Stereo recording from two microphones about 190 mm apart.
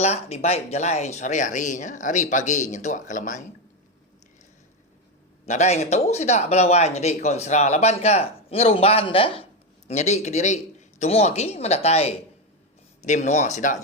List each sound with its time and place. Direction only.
0.0 s speech: 35° left (ahead or behind)
5.5 s speech: 35° left (ahead or behind)